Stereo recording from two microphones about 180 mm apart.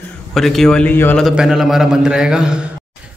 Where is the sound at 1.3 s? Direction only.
Centre (ahead or behind).